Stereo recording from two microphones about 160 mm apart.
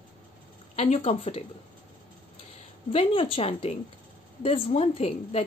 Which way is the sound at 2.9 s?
35° left (ahead or behind).